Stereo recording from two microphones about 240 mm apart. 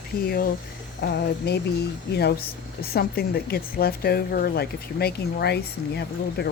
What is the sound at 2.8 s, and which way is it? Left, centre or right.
Speech, left.